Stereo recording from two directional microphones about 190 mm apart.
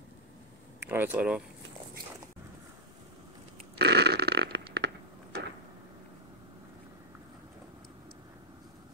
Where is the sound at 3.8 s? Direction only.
60° right (ahead or behind).